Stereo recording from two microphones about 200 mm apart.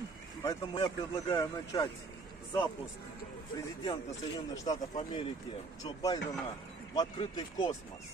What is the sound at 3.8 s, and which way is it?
Speech, 20° left (ahead or behind).